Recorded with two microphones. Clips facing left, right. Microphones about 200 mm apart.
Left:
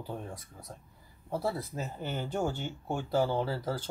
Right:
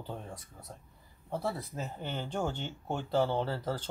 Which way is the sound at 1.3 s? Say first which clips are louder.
Left 2 dB; 5° left (ahead or behind).